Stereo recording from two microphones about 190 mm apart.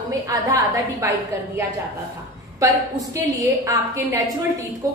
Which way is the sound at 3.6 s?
15° right (ahead or behind).